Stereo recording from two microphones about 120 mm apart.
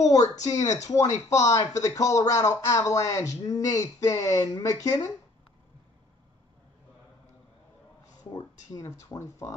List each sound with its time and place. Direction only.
0.0 s speech: 30° left (ahead or behind)
8.2 s speech: 30° left (ahead or behind)